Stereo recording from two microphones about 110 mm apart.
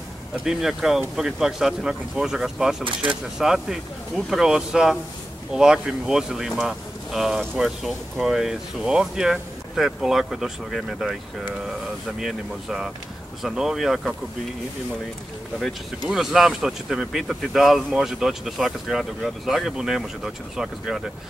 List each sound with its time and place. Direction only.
0.4 s speech: 5° right (ahead or behind)
2.8 s speech: 50° right (ahead or behind)
3.3 s speech: 5° right (ahead or behind)
12.2 s speech: 5° right (ahead or behind)
16.1 s speech: 5° right (ahead or behind)